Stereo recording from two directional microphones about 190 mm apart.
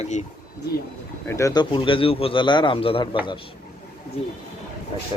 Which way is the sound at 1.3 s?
15° left (ahead or behind).